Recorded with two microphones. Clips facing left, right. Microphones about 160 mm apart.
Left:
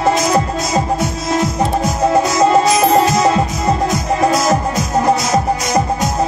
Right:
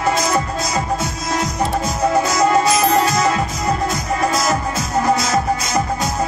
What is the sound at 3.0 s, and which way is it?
Music, 20° left (ahead or behind).